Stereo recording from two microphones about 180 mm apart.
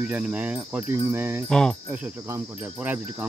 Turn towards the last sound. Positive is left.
turn(degrees=-10)  # may be behind; listen again after turning